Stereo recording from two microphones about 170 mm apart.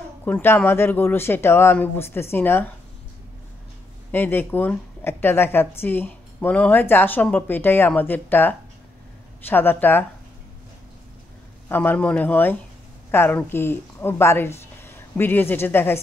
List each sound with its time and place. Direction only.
0.2 s a woman's voice: 10° left (ahead or behind)
4.1 s a woman's voice: 10° left (ahead or behind)
11.7 s a woman's voice: 10° left (ahead or behind)